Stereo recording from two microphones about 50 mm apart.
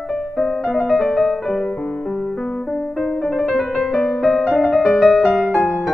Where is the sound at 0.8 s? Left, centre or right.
Centre.